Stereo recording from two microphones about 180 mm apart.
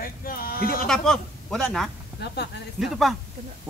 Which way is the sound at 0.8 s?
5° left (ahead or behind).